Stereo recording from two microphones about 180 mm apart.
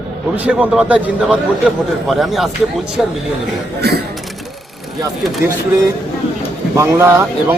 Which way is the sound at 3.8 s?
65° right (ahead or behind).